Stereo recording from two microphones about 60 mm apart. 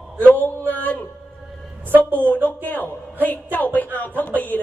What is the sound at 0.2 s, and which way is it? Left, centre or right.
Speech, left.